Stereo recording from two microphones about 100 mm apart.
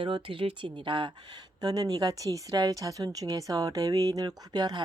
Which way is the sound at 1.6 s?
40° right (ahead or behind).